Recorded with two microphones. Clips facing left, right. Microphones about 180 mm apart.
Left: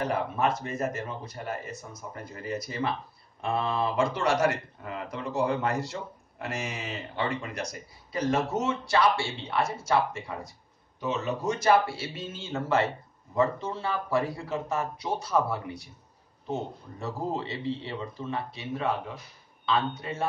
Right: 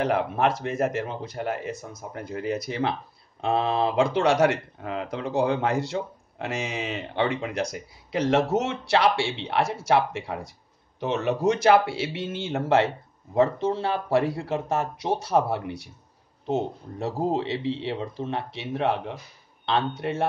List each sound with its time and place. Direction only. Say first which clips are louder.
0.0 s speech: right 4 dB; 70° right (ahead or behind)